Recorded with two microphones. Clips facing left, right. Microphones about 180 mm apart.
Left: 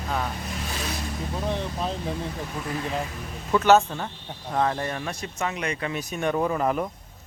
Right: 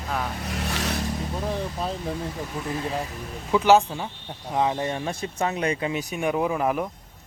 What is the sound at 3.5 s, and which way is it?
Speech, 10° right (ahead or behind).